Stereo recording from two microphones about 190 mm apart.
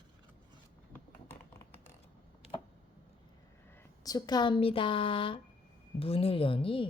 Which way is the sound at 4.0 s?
20° left (ahead or behind).